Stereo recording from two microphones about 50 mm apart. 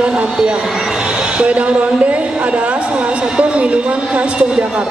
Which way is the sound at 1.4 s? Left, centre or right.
Right.